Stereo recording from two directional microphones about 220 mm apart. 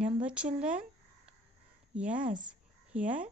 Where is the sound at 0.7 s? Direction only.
5° right (ahead or behind).